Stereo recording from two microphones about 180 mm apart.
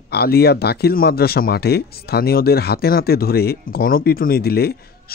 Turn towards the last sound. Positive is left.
turn(degrees=60)  # may be behind; listen again after turning